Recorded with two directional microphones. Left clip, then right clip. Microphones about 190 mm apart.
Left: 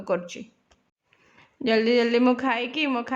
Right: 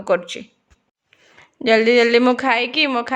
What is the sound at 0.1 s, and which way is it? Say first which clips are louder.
Speech: right 8 dB; 20° right (ahead or behind).